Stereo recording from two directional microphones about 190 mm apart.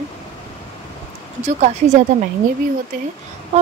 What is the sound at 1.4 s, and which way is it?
Speech, 40° right (ahead or behind).